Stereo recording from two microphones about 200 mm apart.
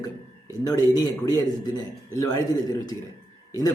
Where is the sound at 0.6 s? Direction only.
20° left (ahead or behind).